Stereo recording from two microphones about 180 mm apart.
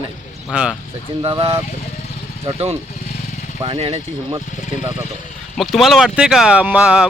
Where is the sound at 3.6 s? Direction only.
30° right (ahead or behind).